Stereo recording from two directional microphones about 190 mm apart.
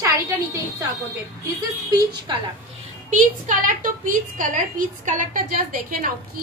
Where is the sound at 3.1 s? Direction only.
45° right (ahead or behind).